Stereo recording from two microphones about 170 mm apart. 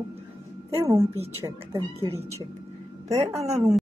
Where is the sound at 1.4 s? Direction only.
25° right (ahead or behind).